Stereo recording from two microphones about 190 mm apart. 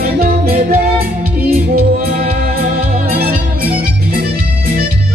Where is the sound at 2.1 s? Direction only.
50° right (ahead or behind).